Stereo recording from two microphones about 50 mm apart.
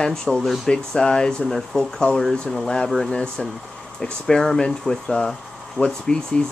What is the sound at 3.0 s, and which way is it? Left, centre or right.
Speech, centre.